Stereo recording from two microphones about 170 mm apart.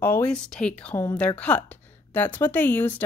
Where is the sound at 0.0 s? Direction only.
15° left (ahead or behind).